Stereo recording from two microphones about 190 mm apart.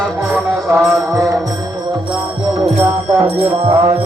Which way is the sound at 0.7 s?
5° right (ahead or behind).